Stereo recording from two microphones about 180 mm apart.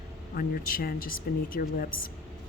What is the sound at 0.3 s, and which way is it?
Speech, 55° left (ahead or behind).